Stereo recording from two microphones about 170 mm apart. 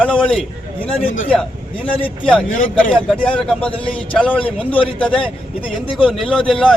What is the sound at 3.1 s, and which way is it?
Speech, centre (ahead or behind).